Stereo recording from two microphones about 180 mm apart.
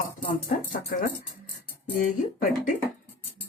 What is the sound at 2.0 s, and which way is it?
Speech, 45° left (ahead or behind).